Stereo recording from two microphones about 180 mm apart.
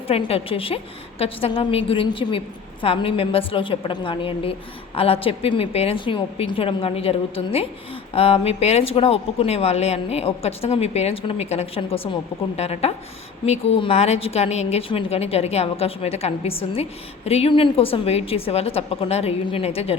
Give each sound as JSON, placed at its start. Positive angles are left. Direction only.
{"t": 0.1, "sound": "a woman's voice", "side_deg": 30}